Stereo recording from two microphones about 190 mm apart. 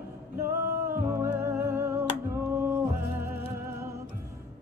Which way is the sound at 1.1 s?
15° right (ahead or behind).